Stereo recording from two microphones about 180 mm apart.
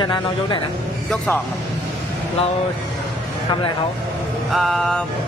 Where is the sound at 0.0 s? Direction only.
25° left (ahead or behind).